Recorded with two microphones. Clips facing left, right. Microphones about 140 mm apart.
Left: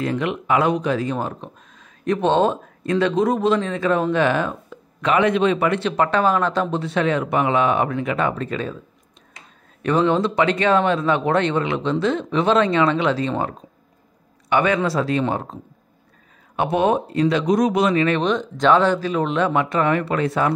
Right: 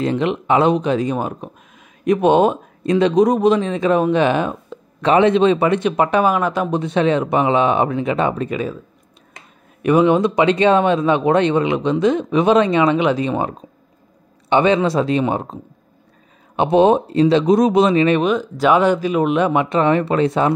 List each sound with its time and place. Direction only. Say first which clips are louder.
0.0 s speech: right 4 dB; 25° right (ahead or behind)
5.0 s speech: right 5 dB; 30° right (ahead or behind); by 8.7 s 10° right (ahead or behind)
9.8 s speech: right 5 dB; 15° right (ahead or behind)
18.2 s speech: right 2 dB; 5° right (ahead or behind); by 20.5 s 20° right (ahead or behind)